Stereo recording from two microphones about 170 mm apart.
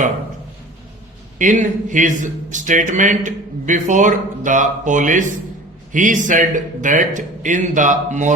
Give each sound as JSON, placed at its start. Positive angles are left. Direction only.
{"t": 1.4, "sound": "a man's voice", "side_deg": -50}